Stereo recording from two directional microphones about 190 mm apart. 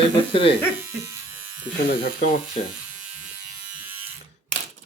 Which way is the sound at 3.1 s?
10° right (ahead or behind).